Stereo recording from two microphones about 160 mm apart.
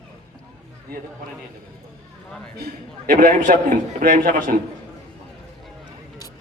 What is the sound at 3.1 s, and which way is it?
A man's voice, 60° right (ahead or behind).